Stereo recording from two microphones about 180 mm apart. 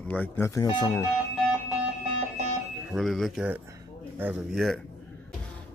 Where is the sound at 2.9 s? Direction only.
Centre (ahead or behind).